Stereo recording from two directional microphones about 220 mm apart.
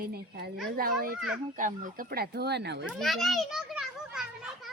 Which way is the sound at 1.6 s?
40° right (ahead or behind).